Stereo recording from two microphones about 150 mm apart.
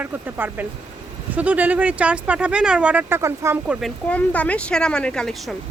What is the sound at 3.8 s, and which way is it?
Speech, 10° left (ahead or behind).